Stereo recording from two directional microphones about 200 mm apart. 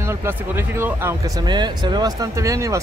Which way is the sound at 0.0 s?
15° right (ahead or behind).